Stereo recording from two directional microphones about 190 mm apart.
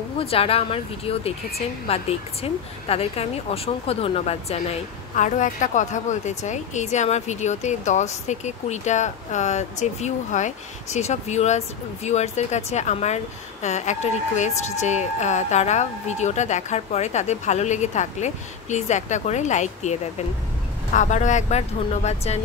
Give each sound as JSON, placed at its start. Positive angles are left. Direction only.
{"t": 0.2, "sound": "a woman's voice", "side_deg": 30}